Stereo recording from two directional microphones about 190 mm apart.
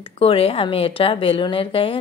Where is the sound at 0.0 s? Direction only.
30° left (ahead or behind).